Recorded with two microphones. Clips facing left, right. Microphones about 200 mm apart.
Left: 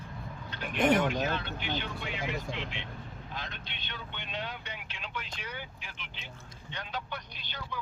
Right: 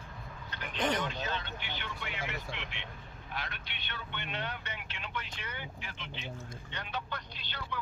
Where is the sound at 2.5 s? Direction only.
20° right (ahead or behind).